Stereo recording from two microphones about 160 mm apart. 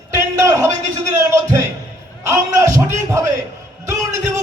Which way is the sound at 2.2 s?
20° right (ahead or behind).